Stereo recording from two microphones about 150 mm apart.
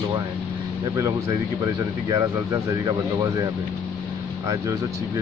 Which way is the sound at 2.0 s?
20° right (ahead or behind).